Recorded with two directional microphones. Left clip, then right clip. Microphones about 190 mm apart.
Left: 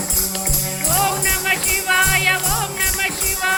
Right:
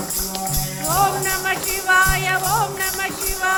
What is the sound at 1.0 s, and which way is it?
Music, 20° right (ahead or behind).